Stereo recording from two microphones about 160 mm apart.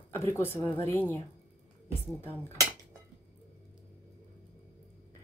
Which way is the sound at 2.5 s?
20° right (ahead or behind).